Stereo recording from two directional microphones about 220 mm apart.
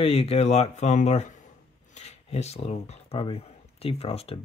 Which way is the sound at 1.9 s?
30° left (ahead or behind).